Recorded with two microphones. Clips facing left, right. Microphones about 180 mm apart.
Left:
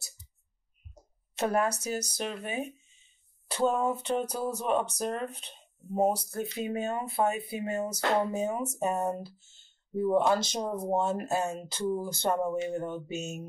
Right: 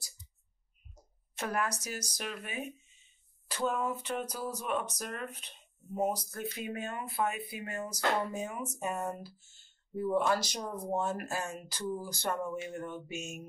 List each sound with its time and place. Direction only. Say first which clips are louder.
1.4 s speech: left 7 dB; 30° left (ahead or behind)